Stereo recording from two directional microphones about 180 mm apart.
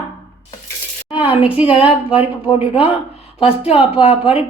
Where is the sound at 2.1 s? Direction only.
30° left (ahead or behind).